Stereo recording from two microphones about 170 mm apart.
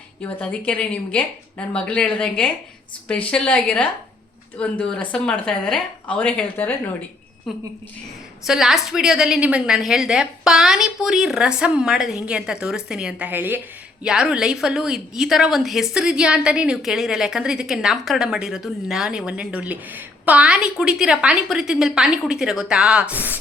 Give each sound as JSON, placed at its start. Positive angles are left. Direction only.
{"t": 0.2, "sound": "a woman's voice", "side_deg": 5}
{"t": 7.5, "sound": "a woman's voice", "side_deg": 0}